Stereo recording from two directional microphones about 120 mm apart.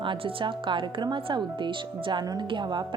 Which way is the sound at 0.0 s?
45° right (ahead or behind).